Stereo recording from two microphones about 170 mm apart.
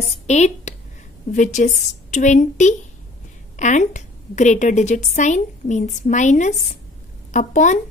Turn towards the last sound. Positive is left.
turn(degrees=45)  # may be behind; listen again after turning